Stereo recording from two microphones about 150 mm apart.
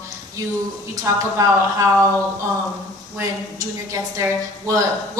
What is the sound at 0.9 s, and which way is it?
A woman's voice, 20° right (ahead or behind).